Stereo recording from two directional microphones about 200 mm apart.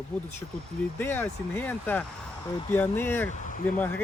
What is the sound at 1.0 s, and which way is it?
Speech, 10° left (ahead or behind).